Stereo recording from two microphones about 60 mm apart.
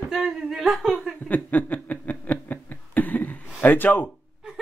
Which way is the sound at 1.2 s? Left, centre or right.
Left.